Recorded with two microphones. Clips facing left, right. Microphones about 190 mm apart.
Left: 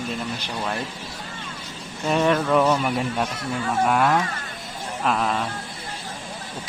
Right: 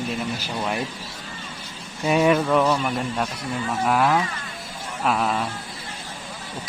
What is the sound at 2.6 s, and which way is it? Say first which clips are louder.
Speech: left 1 dB; 10° left (ahead or behind).